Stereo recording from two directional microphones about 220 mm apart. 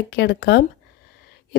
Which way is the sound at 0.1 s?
50° left (ahead or behind).